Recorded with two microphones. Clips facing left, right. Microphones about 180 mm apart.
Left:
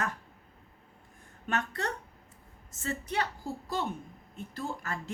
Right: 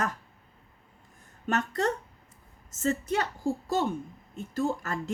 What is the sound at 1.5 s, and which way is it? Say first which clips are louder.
A woman's voice: right 5 dB; 40° right (ahead or behind).